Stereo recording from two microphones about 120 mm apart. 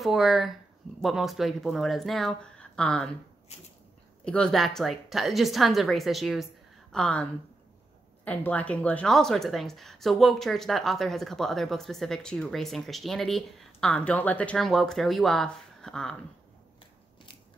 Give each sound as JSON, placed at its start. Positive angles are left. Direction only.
{"t": 0.0, "sound": "a woman's voice", "side_deg": 0}
{"t": 3.5, "sound": "a sound", "side_deg": 60}
{"t": 4.2, "sound": "a woman's voice", "side_deg": 10}
{"t": 8.3, "sound": "a woman's voice", "side_deg": 10}